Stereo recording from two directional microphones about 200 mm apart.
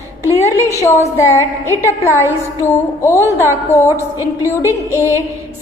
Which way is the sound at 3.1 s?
15° right (ahead or behind).